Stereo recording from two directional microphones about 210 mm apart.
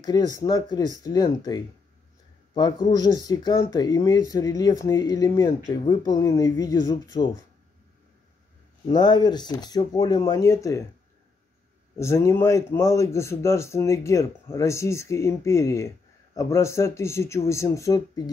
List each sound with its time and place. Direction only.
0.0 s a man's voice: 20° left (ahead or behind)
8.8 s speech: 20° left (ahead or behind)
12.0 s a man's voice: 10° left (ahead or behind)